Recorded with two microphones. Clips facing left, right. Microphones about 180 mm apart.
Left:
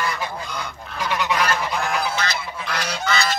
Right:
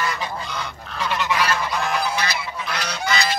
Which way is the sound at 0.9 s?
10° left (ahead or behind).